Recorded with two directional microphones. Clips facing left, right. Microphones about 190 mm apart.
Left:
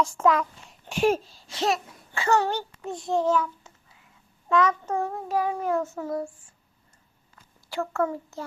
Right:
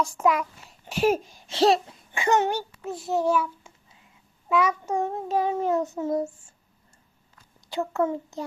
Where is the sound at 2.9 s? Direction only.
5° right (ahead or behind).